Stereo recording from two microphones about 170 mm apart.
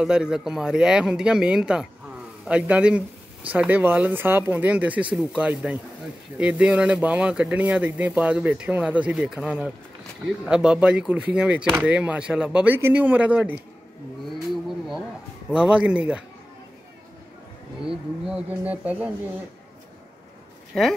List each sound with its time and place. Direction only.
0.0 s speech: 5° right (ahead or behind)
14.3 s vehicle: centre (ahead or behind)
15.5 s speech: 5° right (ahead or behind)
17.8 s speech: 5° right (ahead or behind)
20.7 s speech: 5° left (ahead or behind)